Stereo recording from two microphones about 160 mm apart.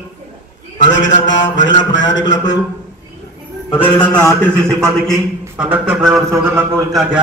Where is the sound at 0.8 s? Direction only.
50° left (ahead or behind).